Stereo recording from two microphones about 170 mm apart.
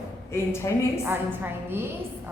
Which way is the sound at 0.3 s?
15° left (ahead or behind).